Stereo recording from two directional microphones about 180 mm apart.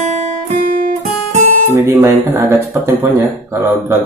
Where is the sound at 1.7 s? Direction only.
15° right (ahead or behind).